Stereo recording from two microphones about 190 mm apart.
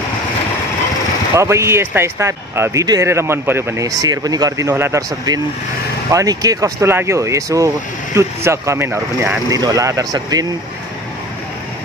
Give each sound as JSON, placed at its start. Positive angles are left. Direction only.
{"t": 1.3, "sound": "speech", "side_deg": -15}